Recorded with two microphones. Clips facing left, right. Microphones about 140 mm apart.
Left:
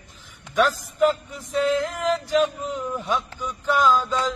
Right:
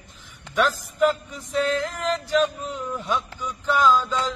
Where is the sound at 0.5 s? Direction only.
10° left (ahead or behind).